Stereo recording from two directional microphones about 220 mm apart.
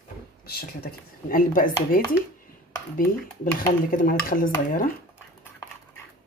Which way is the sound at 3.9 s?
40° left (ahead or behind).